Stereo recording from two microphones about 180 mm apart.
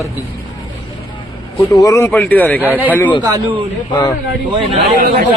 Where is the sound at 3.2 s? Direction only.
25° right (ahead or behind).